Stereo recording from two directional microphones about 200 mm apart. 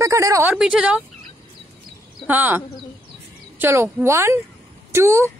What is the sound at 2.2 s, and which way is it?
A woman's voice, 10° right (ahead or behind).